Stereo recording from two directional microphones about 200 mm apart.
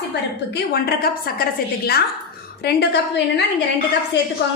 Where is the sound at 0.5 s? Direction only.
50° left (ahead or behind).